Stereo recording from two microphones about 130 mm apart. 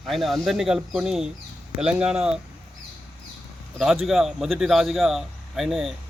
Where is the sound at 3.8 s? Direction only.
Centre (ahead or behind).